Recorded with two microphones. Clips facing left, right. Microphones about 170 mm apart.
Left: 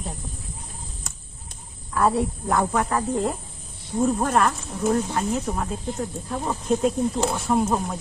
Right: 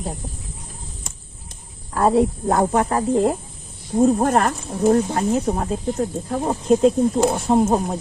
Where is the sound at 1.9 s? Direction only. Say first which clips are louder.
Right 5 dB; 40° right (ahead or behind).